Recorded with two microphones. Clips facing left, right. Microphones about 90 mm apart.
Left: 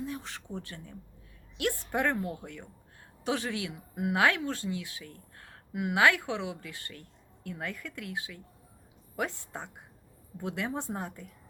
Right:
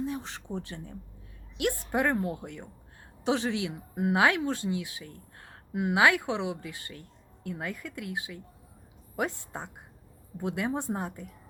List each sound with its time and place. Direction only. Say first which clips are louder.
0.0 s a woman's voice: right 4 dB; 20° right (ahead or behind)